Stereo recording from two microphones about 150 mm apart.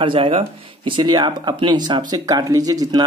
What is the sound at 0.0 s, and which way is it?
Speech, 35° right (ahead or behind).